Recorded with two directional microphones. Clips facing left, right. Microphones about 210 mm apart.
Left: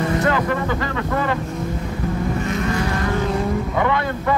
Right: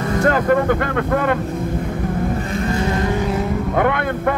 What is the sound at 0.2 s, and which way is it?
Speech, 50° right (ahead or behind).